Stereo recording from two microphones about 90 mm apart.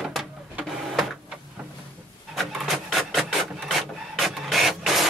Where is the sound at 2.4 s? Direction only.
Centre (ahead or behind).